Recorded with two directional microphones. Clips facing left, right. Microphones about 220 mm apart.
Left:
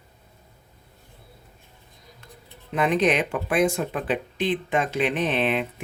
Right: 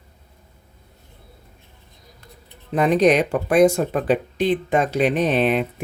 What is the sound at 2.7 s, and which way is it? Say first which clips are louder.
Speech: right 5 dB; 40° right (ahead or behind).